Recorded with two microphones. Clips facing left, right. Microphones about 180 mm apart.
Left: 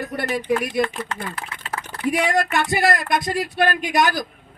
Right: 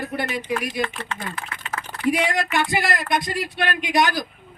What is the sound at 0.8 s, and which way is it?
Speech, 35° left (ahead or behind).